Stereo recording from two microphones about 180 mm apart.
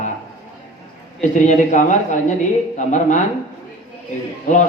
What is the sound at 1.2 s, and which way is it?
Speech, 40° left (ahead or behind).